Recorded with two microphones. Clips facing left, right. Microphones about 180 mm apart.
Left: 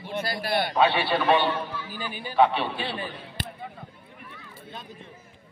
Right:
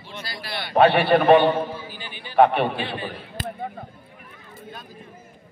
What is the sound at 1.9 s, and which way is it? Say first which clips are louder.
Speech: left 4 dB; 45° left (ahead or behind).